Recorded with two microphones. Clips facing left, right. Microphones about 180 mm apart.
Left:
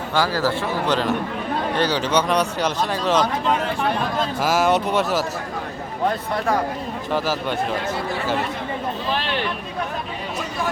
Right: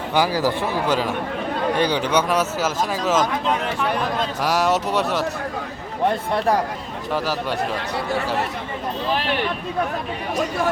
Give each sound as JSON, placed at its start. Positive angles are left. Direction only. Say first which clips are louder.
{"t": 0.1, "sound": "a man's voice", "louder": "right 1 dB", "side_deg": -15}
{"t": 4.4, "sound": "a man's voice", "louder": "left 1 dB", "side_deg": 0}
{"t": 6.3, "sound": "speech", "louder": "right 3 dB", "side_deg": -35}